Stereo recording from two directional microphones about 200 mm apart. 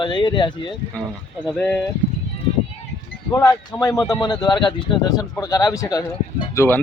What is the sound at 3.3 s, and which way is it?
Speech, 20° left (ahead or behind).